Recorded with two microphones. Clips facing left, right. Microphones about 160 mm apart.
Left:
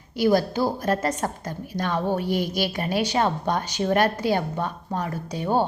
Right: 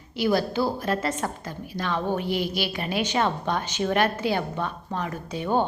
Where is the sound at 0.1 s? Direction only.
40° left (ahead or behind).